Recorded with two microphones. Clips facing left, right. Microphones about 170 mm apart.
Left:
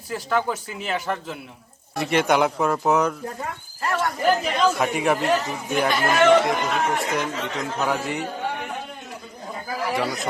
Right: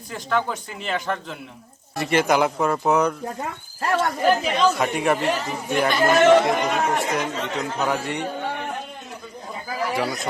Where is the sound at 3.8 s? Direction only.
55° right (ahead or behind).